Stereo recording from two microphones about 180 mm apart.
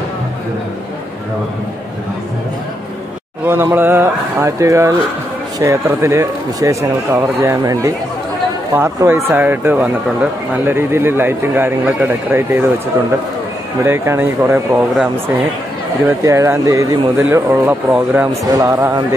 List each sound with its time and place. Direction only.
3.4 s speech: 10° right (ahead or behind)
13.8 s speech: 15° right (ahead or behind)
18.4 s speech: 20° right (ahead or behind)